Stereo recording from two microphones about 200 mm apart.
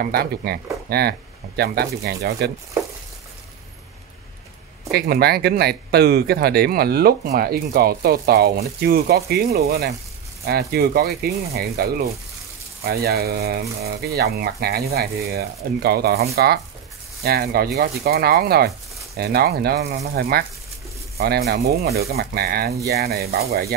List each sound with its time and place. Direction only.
0.0 s speech: 50° right (ahead or behind)
4.9 s speech: 50° right (ahead or behind)